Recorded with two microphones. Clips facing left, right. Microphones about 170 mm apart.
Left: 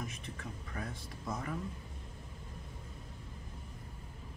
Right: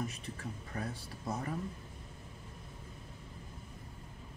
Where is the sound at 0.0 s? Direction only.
35° right (ahead or behind).